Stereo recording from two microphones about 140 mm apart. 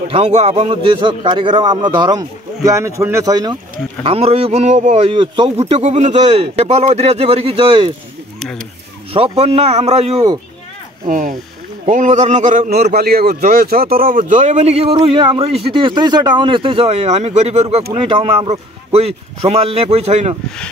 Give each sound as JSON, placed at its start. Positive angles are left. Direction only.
{"t": 0.1, "sound": "a man's voice", "side_deg": -45}
{"t": 4.0, "sound": "speech", "side_deg": -45}
{"t": 5.1, "sound": "speech", "side_deg": -35}
{"t": 9.1, "sound": "speech", "side_deg": -40}
{"t": 11.1, "sound": "speech", "side_deg": -70}
{"t": 13.3, "sound": "speech", "side_deg": -90}